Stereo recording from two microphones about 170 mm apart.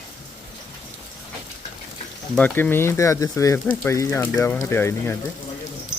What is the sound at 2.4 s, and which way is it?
Speech, 10° left (ahead or behind).